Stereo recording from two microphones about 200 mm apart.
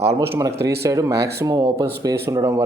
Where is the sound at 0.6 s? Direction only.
55° right (ahead or behind).